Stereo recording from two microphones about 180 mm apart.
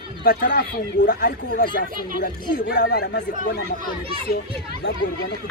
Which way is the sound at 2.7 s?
65° left (ahead or behind).